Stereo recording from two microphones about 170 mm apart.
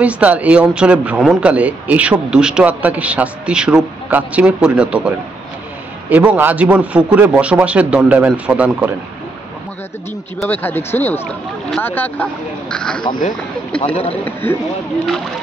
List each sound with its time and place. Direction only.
0.0 s a man's voice: 10° right (ahead or behind)
10.4 s speech: 10° left (ahead or behind)
13.7 s a man's voice: 35° left (ahead or behind)
14.2 s speech: 10° left (ahead or behind)